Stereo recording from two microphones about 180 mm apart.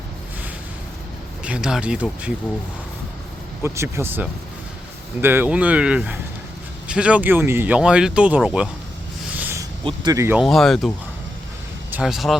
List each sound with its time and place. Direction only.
1.5 s speech: 5° right (ahead or behind)
3.6 s speech: 15° right (ahead or behind)
9.3 s a sound: 10° right (ahead or behind)
9.8 s speech: 20° right (ahead or behind)
10.4 s speech: centre (ahead or behind)